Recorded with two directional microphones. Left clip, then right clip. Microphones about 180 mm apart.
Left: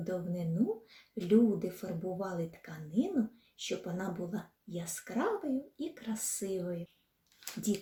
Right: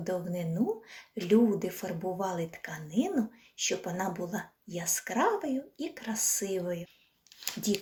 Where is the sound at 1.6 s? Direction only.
15° left (ahead or behind).